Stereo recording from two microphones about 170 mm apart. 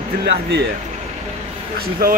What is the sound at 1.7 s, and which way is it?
Speech, 65° right (ahead or behind).